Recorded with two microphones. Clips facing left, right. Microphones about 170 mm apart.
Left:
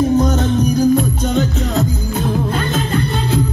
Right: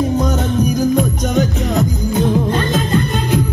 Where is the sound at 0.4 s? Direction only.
15° right (ahead or behind).